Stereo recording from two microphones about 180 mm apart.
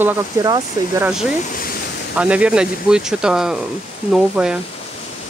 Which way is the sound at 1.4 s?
50° left (ahead or behind).